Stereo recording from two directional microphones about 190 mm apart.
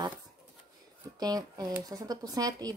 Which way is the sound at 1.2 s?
20° right (ahead or behind).